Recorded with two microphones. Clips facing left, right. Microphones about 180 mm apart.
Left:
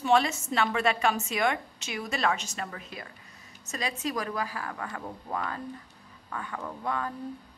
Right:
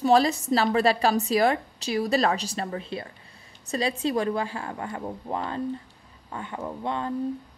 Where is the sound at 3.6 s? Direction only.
30° right (ahead or behind).